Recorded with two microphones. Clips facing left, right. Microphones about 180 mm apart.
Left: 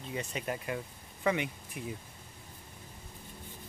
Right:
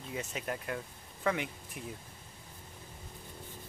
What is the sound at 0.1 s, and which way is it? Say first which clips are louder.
Speech: left 1 dB; centre (ahead or behind).